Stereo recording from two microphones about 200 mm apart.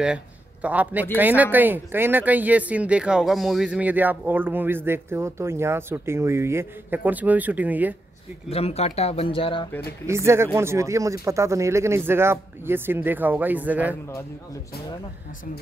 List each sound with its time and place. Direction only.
0.0 s a man's voice: 5° right (ahead or behind)
8.5 s speech: 30° left (ahead or behind)
10.0 s speech: 15° right (ahead or behind)